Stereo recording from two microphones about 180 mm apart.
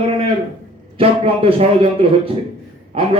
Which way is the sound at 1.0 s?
30° right (ahead or behind).